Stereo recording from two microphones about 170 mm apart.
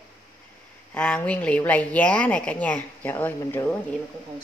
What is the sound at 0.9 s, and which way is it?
A woman's voice, 5° left (ahead or behind).